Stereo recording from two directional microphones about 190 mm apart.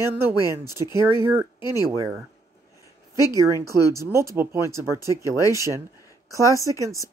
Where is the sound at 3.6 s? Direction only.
15° right (ahead or behind).